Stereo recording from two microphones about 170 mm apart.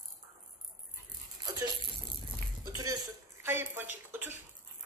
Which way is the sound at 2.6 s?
25° right (ahead or behind).